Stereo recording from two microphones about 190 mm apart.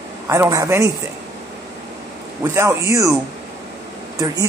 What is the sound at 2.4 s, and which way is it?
Speech, 15° right (ahead or behind).